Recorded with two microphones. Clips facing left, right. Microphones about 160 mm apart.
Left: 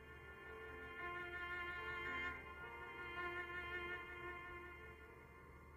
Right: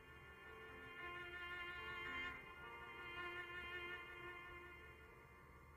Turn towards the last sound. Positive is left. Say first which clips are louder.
# left 4 dB
turn(degrees=40)  # may be behind; listen again after turning